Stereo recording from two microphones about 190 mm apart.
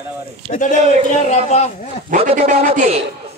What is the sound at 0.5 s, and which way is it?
A woman's voice, 40° left (ahead or behind).